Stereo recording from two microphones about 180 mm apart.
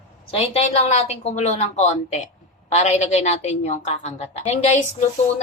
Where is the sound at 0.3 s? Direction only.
35° left (ahead or behind).